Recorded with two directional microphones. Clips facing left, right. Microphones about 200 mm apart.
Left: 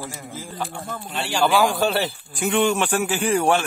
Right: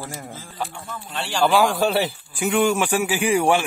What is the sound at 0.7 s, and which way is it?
Speech, 45° left (ahead or behind).